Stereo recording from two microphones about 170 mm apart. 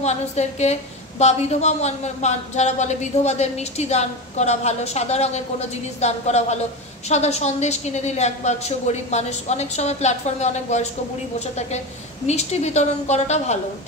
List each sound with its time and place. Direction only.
0.0 s a woman's voice: 40° left (ahead or behind)